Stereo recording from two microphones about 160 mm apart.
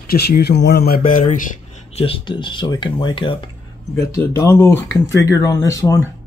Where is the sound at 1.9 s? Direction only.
35° left (ahead or behind).